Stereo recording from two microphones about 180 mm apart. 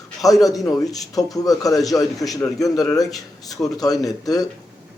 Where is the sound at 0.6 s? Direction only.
20° left (ahead or behind).